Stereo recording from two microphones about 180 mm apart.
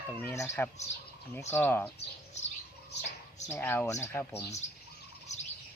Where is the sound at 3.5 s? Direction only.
10° left (ahead or behind).